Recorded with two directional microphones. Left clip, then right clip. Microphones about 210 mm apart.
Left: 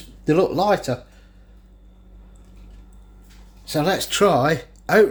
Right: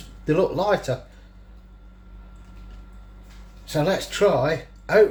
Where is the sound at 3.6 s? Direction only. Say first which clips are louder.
Left 2 dB; 40° left (ahead or behind).